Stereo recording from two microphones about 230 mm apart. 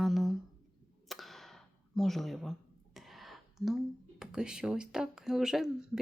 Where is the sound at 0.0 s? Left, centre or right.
Centre.